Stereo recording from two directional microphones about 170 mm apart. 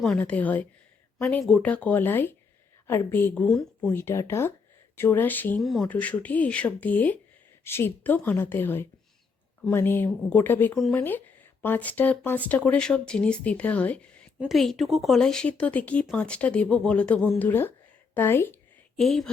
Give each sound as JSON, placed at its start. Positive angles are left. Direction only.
{"t": 0.0, "sound": "speech", "side_deg": 5}
{"t": 18.9, "sound": "speech", "side_deg": 0}